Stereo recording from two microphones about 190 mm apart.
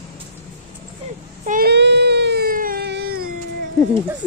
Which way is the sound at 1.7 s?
60° right (ahead or behind).